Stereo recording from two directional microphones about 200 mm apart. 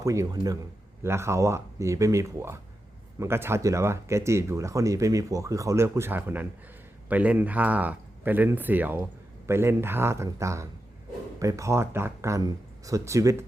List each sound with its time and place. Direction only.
0.0 s speech: 15° right (ahead or behind)